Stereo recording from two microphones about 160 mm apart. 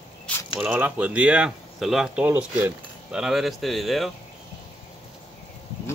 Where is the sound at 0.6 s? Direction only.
10° right (ahead or behind).